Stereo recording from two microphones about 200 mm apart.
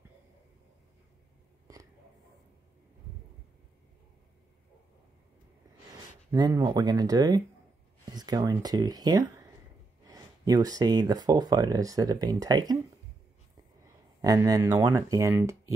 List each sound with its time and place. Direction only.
6.3 s speech: 20° right (ahead or behind)
14.2 s speech: 15° right (ahead or behind)